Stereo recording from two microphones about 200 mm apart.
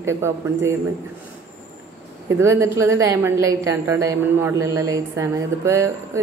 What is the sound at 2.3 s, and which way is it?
A woman's voice, 15° right (ahead or behind).